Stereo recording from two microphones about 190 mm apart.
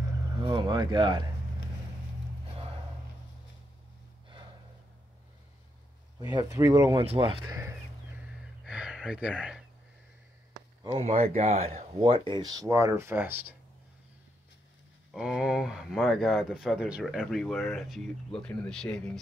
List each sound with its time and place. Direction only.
0.4 s speech: 25° right (ahead or behind)
6.3 s speech: 20° right (ahead or behind)
8.6 s a sound: 5° right (ahead or behind)
9.4 s speech: centre (ahead or behind)
10.5 s a sound: 20° right (ahead or behind)
11.0 s speech: 35° right (ahead or behind); by 13.6 s 10° right (ahead or behind)
15.1 s speech: 5° right (ahead or behind)